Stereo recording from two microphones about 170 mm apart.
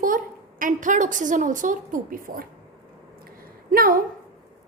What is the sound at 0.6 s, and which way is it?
A woman's voice, 50° right (ahead or behind).